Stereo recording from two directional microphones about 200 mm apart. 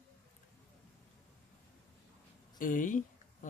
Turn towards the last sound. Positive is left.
turn(degrees=40)  # may be behind; listen again after turning